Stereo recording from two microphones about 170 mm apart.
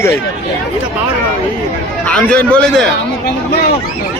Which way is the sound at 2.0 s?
5° left (ahead or behind).